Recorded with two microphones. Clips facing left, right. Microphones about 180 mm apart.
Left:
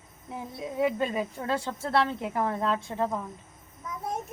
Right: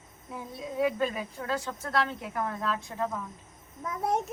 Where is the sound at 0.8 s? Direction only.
25° left (ahead or behind).